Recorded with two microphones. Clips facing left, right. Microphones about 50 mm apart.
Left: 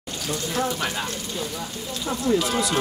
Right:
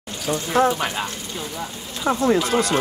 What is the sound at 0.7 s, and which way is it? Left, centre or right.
Speech, right.